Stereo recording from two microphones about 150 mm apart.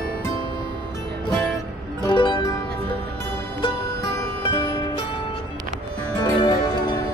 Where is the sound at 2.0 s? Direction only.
30° left (ahead or behind).